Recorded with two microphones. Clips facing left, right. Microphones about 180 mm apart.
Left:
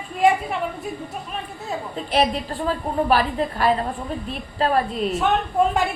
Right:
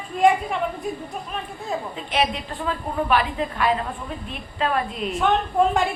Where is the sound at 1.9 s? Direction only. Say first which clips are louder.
Left 5 dB; 40° left (ahead or behind).